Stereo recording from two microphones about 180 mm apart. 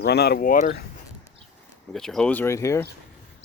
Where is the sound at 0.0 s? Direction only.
65° left (ahead or behind).